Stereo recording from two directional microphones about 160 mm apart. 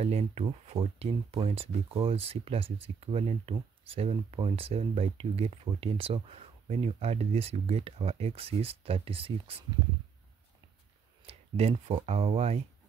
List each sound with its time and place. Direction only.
0.0 s speech: 40° right (ahead or behind)
11.2 s speech: 35° right (ahead or behind)